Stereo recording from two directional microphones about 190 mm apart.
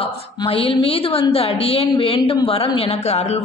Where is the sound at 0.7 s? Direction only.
30° left (ahead or behind).